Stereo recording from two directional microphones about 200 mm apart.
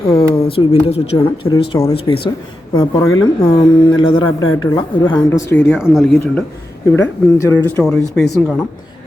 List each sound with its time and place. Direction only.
0.0 s speech: 25° left (ahead or behind)
5.7 s speech: centre (ahead or behind)
6.9 s speech: 15° left (ahead or behind)